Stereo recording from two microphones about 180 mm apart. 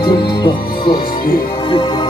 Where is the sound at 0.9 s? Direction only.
55° left (ahead or behind).